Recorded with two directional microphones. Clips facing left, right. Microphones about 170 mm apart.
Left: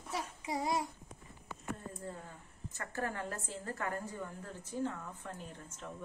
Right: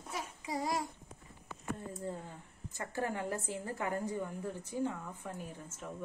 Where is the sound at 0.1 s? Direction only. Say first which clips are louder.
Left 1 dB; 25° left (ahead or behind).